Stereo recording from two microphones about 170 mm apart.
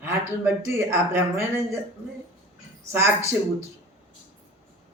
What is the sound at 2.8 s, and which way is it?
Speech, 15° right (ahead or behind).